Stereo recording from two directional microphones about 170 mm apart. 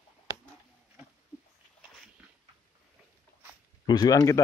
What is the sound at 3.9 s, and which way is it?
Speech, 20° left (ahead or behind).